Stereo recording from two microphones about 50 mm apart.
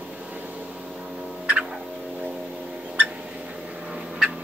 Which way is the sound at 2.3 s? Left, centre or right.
Centre.